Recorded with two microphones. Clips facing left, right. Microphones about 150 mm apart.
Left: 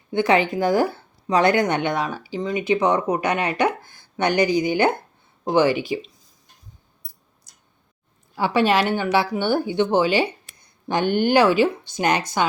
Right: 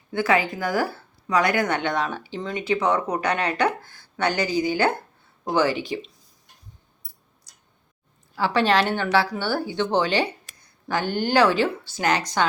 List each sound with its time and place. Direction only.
0.1 s speech: 20° left (ahead or behind)
8.4 s speech: 15° left (ahead or behind)